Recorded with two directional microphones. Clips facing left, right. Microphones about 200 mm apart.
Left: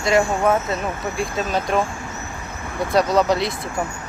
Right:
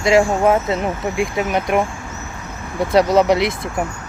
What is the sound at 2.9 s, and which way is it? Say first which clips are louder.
Speech: right 4 dB; 20° right (ahead or behind).